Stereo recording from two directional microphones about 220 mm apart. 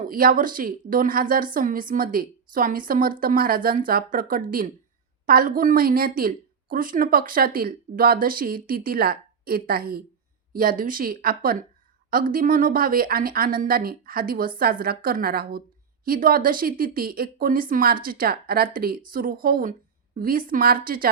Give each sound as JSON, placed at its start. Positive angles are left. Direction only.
{"t": 0.0, "sound": "speech", "side_deg": -40}